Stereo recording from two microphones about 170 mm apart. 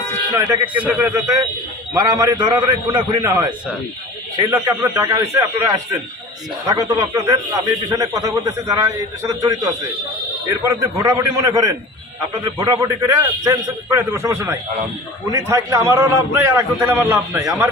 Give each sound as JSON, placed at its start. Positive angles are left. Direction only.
{"t": 0.3, "sound": "a man's voice", "side_deg": -15}
{"t": 4.5, "sound": "a man's voice", "side_deg": -20}